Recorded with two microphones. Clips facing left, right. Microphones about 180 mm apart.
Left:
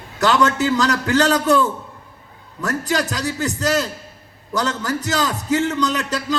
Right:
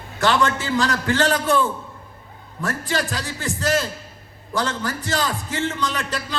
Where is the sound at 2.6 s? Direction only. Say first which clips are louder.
Left 3 dB; 40° left (ahead or behind).